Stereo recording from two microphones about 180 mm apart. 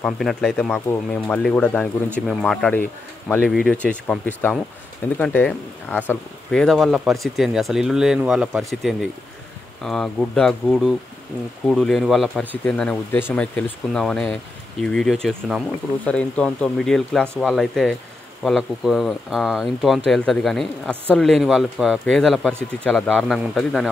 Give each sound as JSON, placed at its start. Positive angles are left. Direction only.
{"t": 0.0, "sound": "speech", "side_deg": 0}
{"t": 9.8, "sound": "speech", "side_deg": 0}